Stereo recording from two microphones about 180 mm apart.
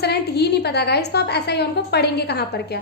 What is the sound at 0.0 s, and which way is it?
A woman's voice, 65° left (ahead or behind).